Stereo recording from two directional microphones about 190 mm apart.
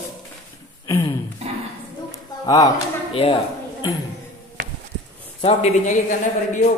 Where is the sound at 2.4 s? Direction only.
20° left (ahead or behind).